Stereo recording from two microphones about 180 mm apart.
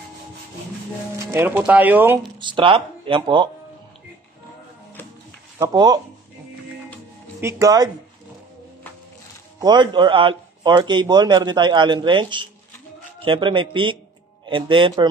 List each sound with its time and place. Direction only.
1.1 s speech: 15° right (ahead or behind)
2.4 s speech: 30° right (ahead or behind)
5.6 s speech: 20° right (ahead or behind)
7.3 s speech: 15° right (ahead or behind)
9.6 s speech: 25° right (ahead or behind)